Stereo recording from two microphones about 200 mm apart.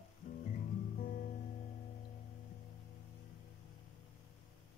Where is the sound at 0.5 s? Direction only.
40° left (ahead or behind).